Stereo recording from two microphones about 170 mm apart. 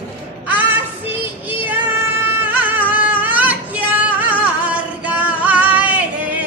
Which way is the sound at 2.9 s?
10° right (ahead or behind).